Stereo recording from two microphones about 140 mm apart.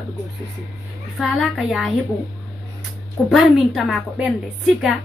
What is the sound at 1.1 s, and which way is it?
Speech, centre (ahead or behind).